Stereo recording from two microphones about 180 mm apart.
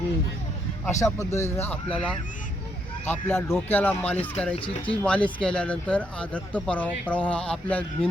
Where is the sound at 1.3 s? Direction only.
15° left (ahead or behind).